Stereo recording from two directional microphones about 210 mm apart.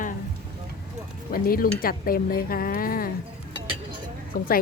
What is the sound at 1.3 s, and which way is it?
Speech, 45° left (ahead or behind).